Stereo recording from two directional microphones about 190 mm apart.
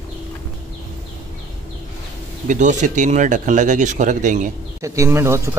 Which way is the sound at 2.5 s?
40° right (ahead or behind).